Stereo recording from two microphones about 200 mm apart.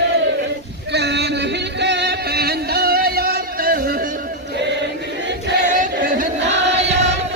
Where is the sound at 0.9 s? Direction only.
55° right (ahead or behind).